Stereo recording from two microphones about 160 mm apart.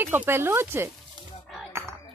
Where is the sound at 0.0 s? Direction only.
15° right (ahead or behind).